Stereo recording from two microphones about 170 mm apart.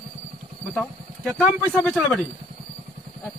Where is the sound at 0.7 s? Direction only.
5° left (ahead or behind).